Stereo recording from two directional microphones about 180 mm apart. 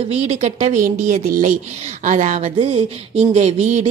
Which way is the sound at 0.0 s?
35° right (ahead or behind).